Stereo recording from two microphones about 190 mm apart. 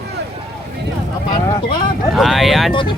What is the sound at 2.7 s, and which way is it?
Speech, 25° left (ahead or behind).